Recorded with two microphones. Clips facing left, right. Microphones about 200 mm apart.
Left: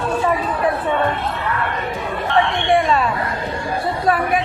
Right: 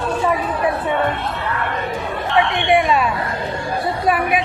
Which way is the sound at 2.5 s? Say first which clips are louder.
Right 1 dB; 15° right (ahead or behind).